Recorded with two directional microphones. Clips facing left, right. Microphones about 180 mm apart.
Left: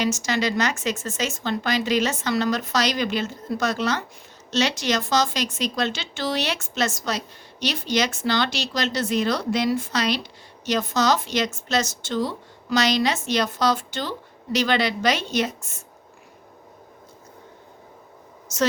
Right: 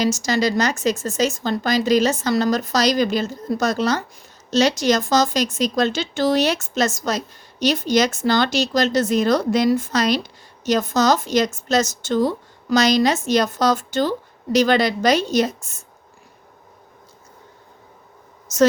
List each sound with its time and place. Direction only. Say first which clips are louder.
0.0 s a woman's voice: right 4 dB; 40° right (ahead or behind)